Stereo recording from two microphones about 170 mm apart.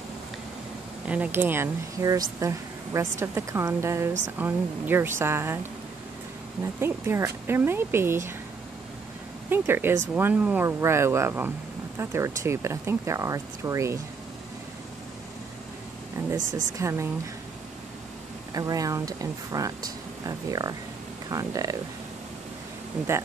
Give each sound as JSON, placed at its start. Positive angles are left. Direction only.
{"t": 1.0, "sound": "speech", "side_deg": -10}
{"t": 9.5, "sound": "speech", "side_deg": -15}
{"t": 16.2, "sound": "speech", "side_deg": -15}
{"t": 18.5, "sound": "speech", "side_deg": -20}